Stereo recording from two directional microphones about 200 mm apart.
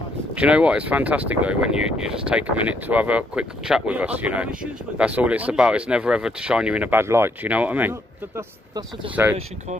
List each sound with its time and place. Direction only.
0.4 s speech: 5° right (ahead or behind)
8.4 s speech: 20° right (ahead or behind)
9.1 s speech: 10° right (ahead or behind)